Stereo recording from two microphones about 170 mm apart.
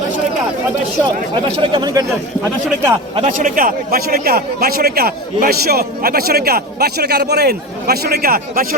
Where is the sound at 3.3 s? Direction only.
50° right (ahead or behind).